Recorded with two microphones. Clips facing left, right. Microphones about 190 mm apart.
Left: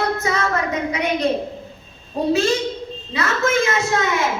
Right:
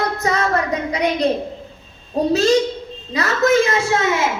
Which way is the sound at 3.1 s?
40° right (ahead or behind).